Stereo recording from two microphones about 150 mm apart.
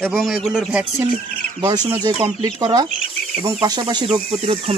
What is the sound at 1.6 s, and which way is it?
Speech, 25° right (ahead or behind).